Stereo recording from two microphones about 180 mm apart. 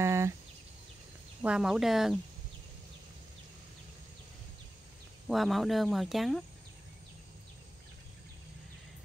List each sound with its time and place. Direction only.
0.0 s a sound: 15° right (ahead or behind)
1.4 s speech: 5° right (ahead or behind)
5.3 s speech: centre (ahead or behind)